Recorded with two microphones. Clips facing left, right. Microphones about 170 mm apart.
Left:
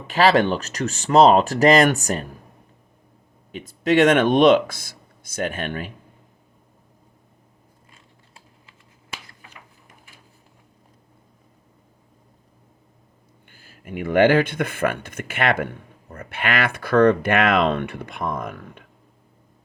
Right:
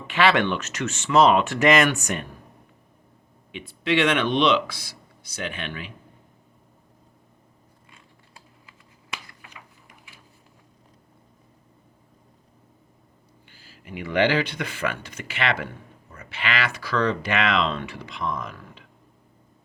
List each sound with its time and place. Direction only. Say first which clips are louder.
0.1 s speech: left 4 dB; 35° left (ahead or behind)
3.5 s speech: left 5 dB; 40° left (ahead or behind)
13.5 s speech: left 5 dB; 50° left (ahead or behind)